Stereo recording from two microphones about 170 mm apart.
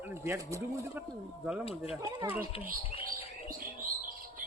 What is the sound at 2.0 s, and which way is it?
Speech, 15° right (ahead or behind).